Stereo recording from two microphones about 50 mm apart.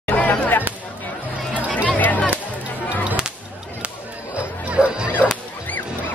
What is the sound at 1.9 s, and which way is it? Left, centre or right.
Music, left.